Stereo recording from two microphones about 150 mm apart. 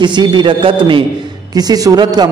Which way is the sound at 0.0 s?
30° right (ahead or behind).